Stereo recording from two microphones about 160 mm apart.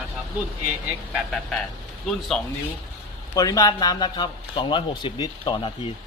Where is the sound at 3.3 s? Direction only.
20° left (ahead or behind).